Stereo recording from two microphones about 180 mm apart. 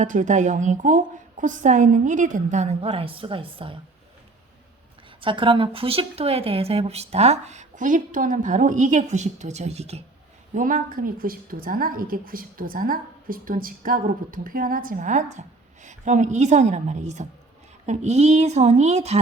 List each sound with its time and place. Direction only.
0.0 s a woman's voice: 45° right (ahead or behind)
5.2 s a woman's voice: 30° right (ahead or behind)
10.5 s a woman's voice: 50° right (ahead or behind)